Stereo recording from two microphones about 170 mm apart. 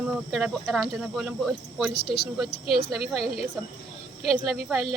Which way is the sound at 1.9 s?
80° left.